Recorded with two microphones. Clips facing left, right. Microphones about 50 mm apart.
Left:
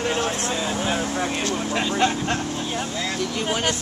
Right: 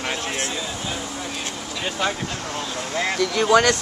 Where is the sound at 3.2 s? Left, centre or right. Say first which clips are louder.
Right 10 dB; right.